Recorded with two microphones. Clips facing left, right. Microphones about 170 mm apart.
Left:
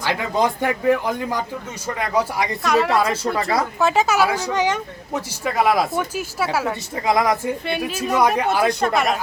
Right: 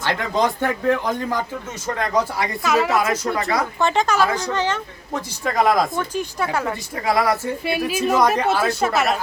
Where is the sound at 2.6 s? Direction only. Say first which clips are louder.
Left 1 dB; centre (ahead or behind).